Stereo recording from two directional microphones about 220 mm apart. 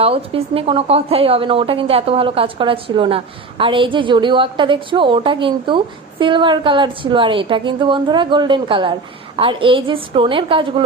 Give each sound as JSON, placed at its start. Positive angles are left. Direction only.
{"t": 0.0, "sound": "a woman's voice", "side_deg": -25}